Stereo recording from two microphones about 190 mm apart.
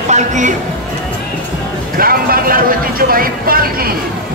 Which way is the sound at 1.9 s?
50° right (ahead or behind).